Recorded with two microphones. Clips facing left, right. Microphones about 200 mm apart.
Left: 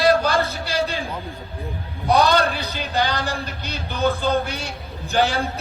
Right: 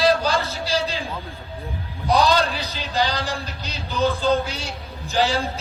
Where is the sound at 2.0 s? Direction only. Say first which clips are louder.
Left 1 dB; 60° left (ahead or behind).